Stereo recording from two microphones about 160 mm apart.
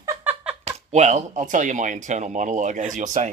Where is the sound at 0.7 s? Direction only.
45° right (ahead or behind).